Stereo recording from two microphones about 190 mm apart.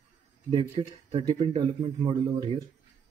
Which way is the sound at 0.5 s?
25° right (ahead or behind).